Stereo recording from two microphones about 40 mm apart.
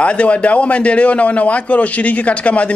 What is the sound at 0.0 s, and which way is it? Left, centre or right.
A man's voice, left.